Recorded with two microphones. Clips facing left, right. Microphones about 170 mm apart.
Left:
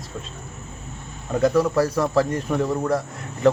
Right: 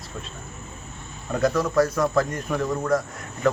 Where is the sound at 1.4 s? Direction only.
25° left (ahead or behind).